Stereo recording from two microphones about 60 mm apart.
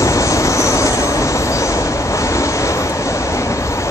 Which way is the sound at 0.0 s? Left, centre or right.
Left.